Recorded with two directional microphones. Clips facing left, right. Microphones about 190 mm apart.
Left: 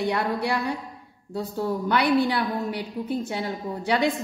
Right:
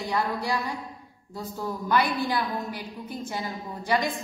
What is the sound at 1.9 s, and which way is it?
A woman's voice, 65° left (ahead or behind).